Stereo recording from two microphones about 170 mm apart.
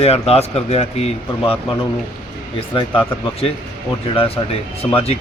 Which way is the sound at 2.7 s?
35° left (ahead or behind).